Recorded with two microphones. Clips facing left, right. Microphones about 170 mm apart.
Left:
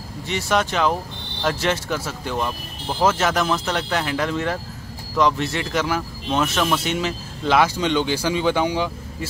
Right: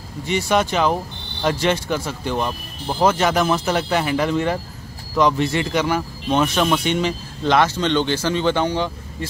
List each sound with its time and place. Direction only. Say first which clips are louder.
0.3 s speech: right 3 dB; centre (ahead or behind)